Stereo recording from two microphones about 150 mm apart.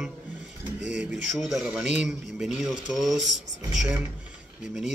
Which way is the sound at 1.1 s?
Centre (ahead or behind).